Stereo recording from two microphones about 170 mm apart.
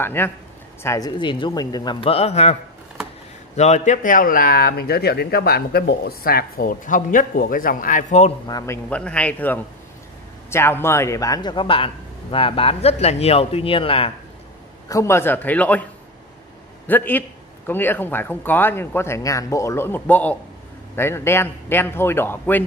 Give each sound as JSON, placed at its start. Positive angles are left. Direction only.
{"t": 0.0, "sound": "speech", "side_deg": 10}
{"t": 3.5, "sound": "speech", "side_deg": 40}
{"t": 8.5, "sound": "a man's voice", "side_deg": 20}
{"t": 14.9, "sound": "speech", "side_deg": 15}
{"t": 16.8, "sound": "speech", "side_deg": 10}